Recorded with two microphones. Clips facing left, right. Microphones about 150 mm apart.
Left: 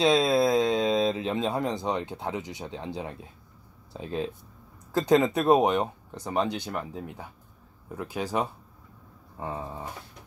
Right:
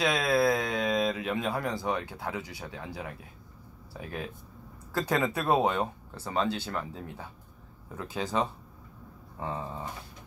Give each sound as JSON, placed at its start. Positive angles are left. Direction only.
{"t": 0.0, "sound": "speech", "side_deg": 25}